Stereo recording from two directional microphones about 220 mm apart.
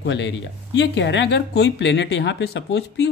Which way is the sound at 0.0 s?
50° left (ahead or behind).